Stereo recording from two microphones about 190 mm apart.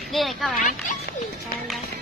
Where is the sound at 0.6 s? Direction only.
45° left (ahead or behind).